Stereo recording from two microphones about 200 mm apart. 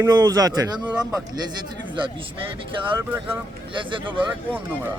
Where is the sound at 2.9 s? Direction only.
15° right (ahead or behind).